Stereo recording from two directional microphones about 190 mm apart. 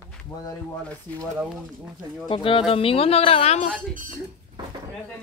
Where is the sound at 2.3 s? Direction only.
25° left (ahead or behind).